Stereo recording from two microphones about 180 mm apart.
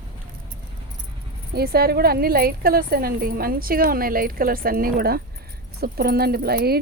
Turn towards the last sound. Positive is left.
turn(degrees=-60)  # may be behind; listen again after turning